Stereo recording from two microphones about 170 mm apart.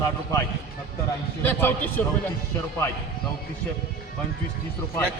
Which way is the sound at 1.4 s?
10° left (ahead or behind).